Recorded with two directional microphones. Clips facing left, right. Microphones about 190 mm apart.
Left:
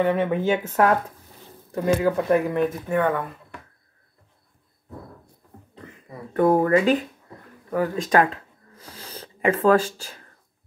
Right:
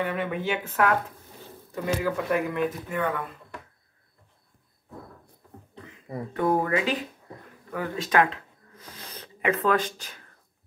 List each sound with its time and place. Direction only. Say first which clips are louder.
0.0 s speech: left 7 dB; 40° left (ahead or behind)
2.1 s speech: left 5 dB; 40° left (ahead or behind)
6.3 s speech: left 7 dB; 45° left (ahead or behind); by 10.2 s 30° left (ahead or behind)